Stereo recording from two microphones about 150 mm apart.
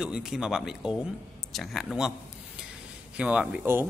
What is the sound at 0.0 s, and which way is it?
Speech, 5° right (ahead or behind).